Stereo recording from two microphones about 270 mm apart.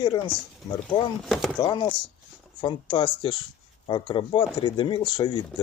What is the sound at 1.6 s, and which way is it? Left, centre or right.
Speech, centre.